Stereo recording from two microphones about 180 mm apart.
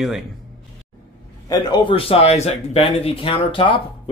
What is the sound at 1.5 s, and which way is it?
A man's voice, 20° left (ahead or behind).